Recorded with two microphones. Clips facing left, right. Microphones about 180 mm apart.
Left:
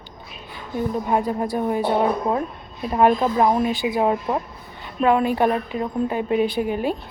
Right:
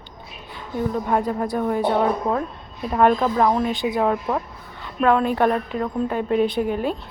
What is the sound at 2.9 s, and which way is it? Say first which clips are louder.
A woman's voice: even; 10° left (ahead or behind).